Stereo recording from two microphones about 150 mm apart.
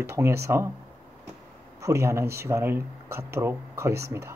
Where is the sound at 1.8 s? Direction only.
20° right (ahead or behind).